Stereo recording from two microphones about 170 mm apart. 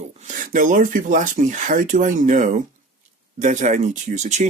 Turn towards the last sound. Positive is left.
turn(degrees=-45)  # may be behind; listen again after turning